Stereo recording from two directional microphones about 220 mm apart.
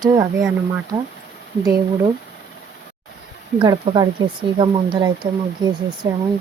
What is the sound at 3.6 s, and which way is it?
Speech, 20° right (ahead or behind).